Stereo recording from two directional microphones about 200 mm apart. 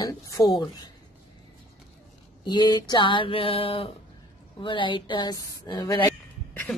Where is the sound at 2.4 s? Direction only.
20° left (ahead or behind).